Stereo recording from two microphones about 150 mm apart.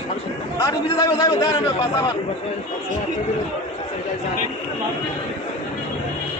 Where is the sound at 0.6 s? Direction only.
25° left (ahead or behind).